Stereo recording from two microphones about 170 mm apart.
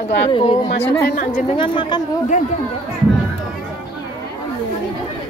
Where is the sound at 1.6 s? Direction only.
30° left (ahead or behind).